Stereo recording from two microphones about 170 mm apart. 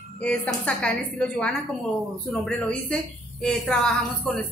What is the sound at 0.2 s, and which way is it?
A woman's voice, 5° left (ahead or behind).